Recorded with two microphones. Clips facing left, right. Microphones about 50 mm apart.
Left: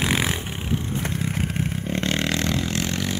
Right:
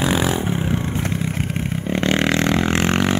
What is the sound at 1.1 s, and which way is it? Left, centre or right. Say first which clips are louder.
Vehicle: right 3 dB; centre.